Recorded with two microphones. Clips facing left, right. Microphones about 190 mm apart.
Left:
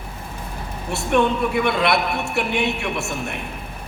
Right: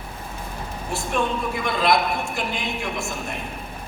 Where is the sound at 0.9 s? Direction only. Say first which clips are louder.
Left 6 dB; 65° left (ahead or behind).